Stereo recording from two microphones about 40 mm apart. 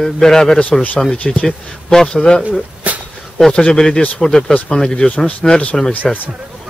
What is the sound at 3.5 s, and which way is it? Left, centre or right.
Speech, left.